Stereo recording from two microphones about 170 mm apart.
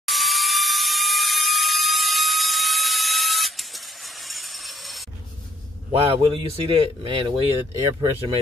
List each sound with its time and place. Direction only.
0.0 s electric toothbrush: centre (ahead or behind)
6.1 s speech: 30° right (ahead or behind)